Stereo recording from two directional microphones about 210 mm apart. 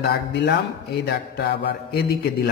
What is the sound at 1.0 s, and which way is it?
A man's voice, 50° left (ahead or behind).